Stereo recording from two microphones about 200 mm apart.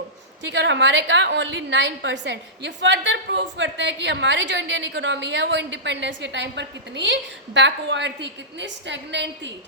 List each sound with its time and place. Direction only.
0.4 s a woman's voice: 65° right (ahead or behind)